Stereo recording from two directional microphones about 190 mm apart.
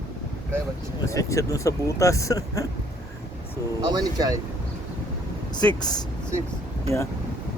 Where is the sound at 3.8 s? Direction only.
20° right (ahead or behind).